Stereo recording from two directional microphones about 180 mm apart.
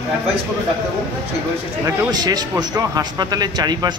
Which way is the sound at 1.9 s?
20° right (ahead or behind).